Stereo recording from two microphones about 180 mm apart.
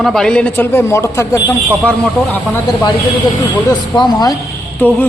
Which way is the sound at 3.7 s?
25° left (ahead or behind).